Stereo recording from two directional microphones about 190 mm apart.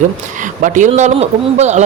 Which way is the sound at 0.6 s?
40° right (ahead or behind).